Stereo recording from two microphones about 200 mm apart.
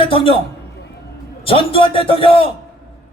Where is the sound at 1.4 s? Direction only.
25° left (ahead or behind).